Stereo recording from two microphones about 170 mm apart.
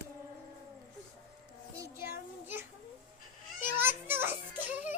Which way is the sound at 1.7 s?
20° right (ahead or behind).